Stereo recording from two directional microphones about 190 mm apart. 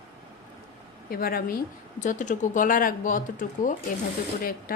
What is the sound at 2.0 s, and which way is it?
Speech, 40° left (ahead or behind).